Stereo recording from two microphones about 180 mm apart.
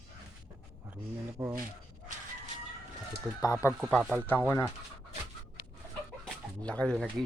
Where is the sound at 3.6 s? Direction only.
15° left (ahead or behind).